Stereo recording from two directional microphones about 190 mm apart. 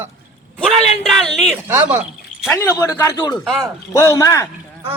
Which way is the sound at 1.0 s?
Centre (ahead or behind).